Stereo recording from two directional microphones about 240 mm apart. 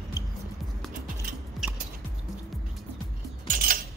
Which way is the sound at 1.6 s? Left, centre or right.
Centre.